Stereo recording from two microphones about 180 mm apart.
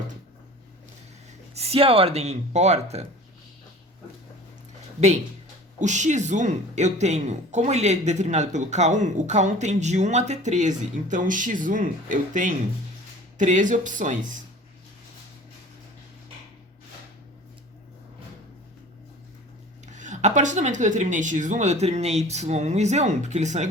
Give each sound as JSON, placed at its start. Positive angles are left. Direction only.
{"t": 1.5, "sound": "speech", "side_deg": -35}
{"t": 5.8, "sound": "speech", "side_deg": -40}
{"t": 19.8, "sound": "speech", "side_deg": -40}